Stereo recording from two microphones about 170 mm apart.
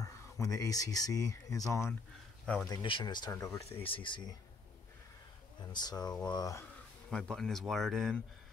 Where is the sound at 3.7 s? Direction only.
35° left (ahead or behind).